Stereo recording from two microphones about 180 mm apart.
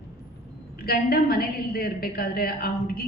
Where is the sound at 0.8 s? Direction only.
55° left (ahead or behind).